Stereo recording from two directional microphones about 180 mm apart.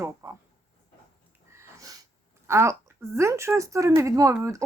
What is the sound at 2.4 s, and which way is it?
Speech, 15° right (ahead or behind).